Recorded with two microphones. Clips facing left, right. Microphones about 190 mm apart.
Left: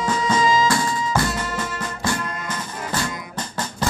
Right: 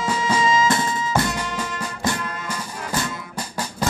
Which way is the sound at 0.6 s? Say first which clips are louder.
Even; 20° right (ahead or behind).